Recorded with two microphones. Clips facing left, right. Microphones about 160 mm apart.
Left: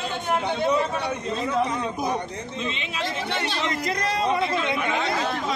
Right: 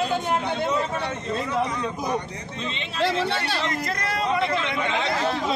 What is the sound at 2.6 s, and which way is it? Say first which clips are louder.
Speech: even; 5° left (ahead or behind).